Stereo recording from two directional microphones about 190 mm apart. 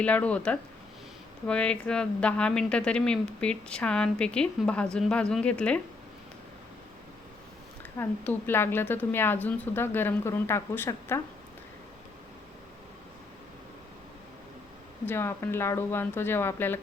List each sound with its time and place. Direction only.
0.0 s a woman's voice: 5° left (ahead or behind)
7.9 s a woman's voice: 10° left (ahead or behind)
15.0 s a woman's voice: 10° left (ahead or behind)